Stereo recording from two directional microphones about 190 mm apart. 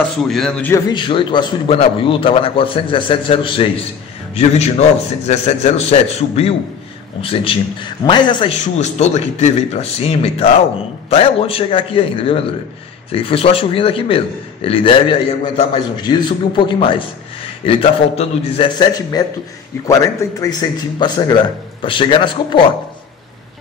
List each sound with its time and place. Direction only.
0.2 s a man's voice: centre (ahead or behind); by 8.5 s 25° left (ahead or behind)
8.7 s a man's voice: 35° left (ahead or behind)